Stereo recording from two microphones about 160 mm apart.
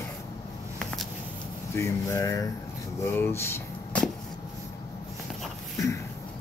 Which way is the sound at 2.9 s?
15° left (ahead or behind).